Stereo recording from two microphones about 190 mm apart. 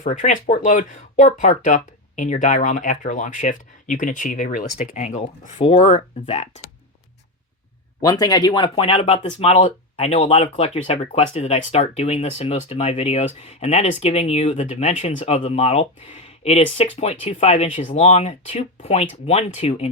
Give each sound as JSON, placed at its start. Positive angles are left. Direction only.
{"t": 0.0, "sound": "speech", "side_deg": 40}
{"t": 8.0, "sound": "speech", "side_deg": 20}